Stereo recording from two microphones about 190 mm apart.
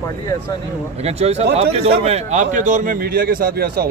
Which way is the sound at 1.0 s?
35° right (ahead or behind).